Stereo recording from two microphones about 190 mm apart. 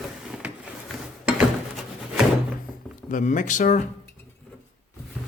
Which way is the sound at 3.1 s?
40° left (ahead or behind).